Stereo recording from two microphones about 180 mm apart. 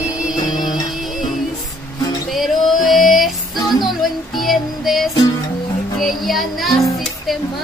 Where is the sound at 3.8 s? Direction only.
Centre (ahead or behind).